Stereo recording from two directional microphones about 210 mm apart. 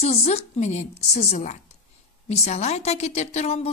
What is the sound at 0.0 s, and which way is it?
A woman's voice, 30° left (ahead or behind).